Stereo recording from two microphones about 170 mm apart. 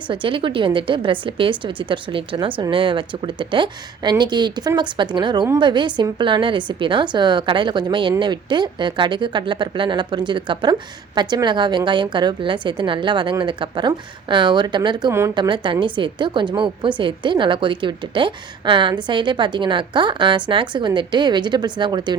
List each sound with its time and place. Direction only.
0.1 s speech: 30° right (ahead or behind)